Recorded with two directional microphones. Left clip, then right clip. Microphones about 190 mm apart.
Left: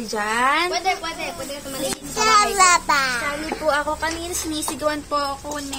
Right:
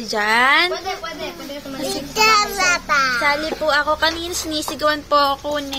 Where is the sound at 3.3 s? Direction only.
15° right (ahead or behind).